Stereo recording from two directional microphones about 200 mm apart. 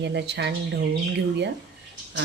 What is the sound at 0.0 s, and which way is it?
Speech, 60° right (ahead or behind).